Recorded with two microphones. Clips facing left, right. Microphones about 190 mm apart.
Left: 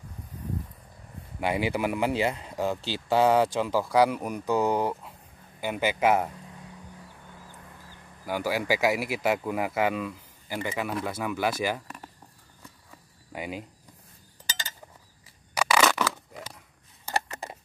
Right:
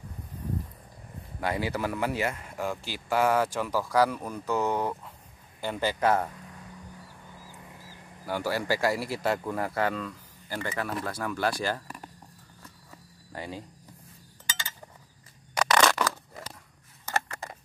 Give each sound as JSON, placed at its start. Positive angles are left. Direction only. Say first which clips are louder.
{"t": 1.4, "sound": "speech", "louder": "left 3 dB", "side_deg": 20}
{"t": 8.3, "sound": "speech", "louder": "left 1 dB", "side_deg": 15}
{"t": 13.3, "sound": "speech", "louder": "left 3 dB", "side_deg": 15}
{"t": 14.4, "sound": "a sound", "louder": "even", "side_deg": 40}
{"t": 15.5, "sound": "crushing", "louder": "even", "side_deg": 5}
{"t": 17.0, "sound": "a sound", "louder": "left 1 dB", "side_deg": 15}